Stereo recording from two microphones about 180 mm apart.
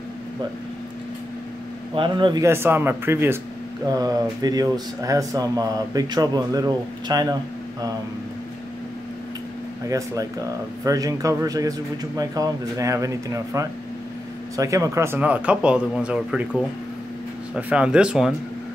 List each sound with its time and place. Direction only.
2.0 s speech: 25° right (ahead or behind)
2.4 s speech: 15° right (ahead or behind)
9.8 s speech: 20° right (ahead or behind)